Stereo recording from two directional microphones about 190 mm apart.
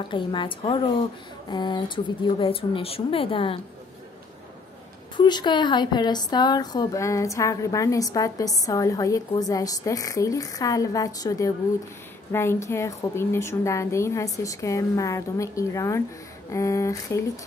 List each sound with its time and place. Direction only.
0.1 s speech: 25° left (ahead or behind)
5.1 s a woman's voice: 25° left (ahead or behind)